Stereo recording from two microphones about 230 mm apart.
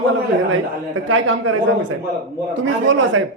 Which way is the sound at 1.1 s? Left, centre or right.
Right.